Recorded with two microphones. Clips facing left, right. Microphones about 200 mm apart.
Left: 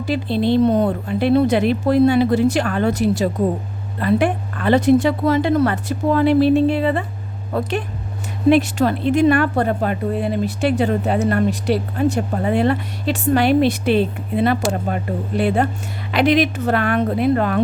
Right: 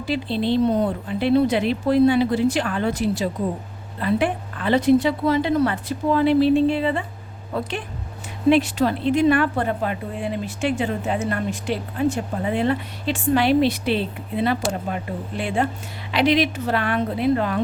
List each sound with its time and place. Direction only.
0.0 s speech: 50° left (ahead or behind)